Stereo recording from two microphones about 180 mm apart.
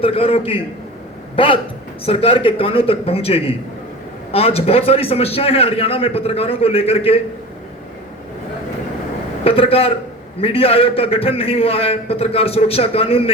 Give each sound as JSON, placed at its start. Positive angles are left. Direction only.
{"t": 0.0, "sound": "a man's voice", "side_deg": 30}
{"t": 9.4, "sound": "a man's voice", "side_deg": 30}